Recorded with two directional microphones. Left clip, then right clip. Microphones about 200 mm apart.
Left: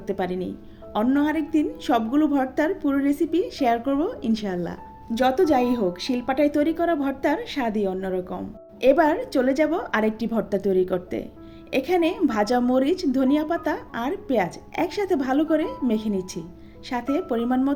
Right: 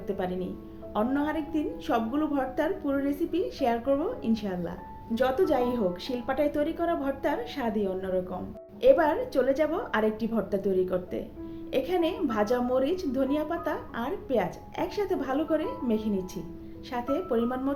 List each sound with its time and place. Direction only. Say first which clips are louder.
0.2 s a woman's voice: left 5 dB; 45° left (ahead or behind)